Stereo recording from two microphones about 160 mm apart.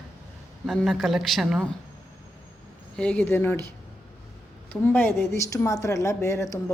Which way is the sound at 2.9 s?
10° left (ahead or behind).